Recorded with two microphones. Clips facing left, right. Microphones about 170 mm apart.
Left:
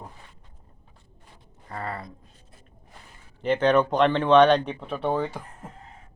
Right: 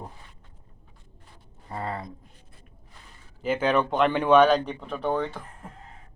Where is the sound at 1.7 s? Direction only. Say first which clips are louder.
Right 1 dB; 20° right (ahead or behind).